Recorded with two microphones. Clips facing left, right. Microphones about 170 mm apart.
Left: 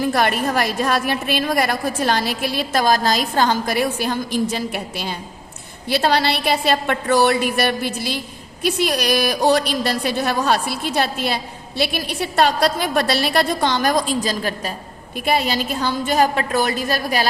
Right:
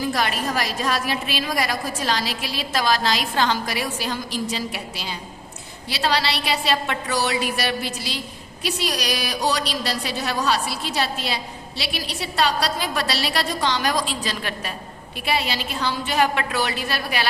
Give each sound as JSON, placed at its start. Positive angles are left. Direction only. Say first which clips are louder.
{"t": 0.0, "sound": "a woman's voice", "louder": "left 5 dB", "side_deg": 55}